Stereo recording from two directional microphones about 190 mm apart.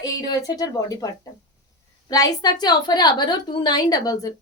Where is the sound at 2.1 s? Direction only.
20° left (ahead or behind).